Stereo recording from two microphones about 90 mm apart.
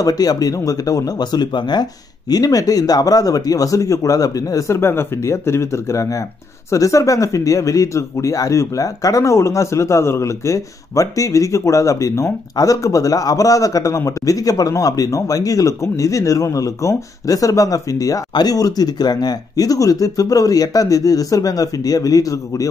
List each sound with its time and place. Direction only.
0.0 s speech: 45° left (ahead or behind)